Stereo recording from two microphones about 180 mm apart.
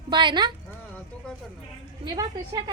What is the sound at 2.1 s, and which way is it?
Speech, 20° right (ahead or behind).